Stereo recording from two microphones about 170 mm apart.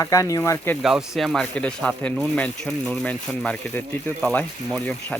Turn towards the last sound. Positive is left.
turn(degrees=5)  # may be behind; listen again after turning